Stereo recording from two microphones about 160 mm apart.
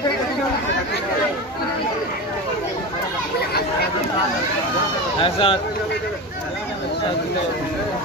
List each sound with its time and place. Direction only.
5.2 s speech: 35° left (ahead or behind)